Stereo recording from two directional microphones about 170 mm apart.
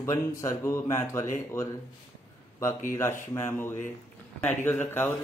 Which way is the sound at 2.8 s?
15° left (ahead or behind).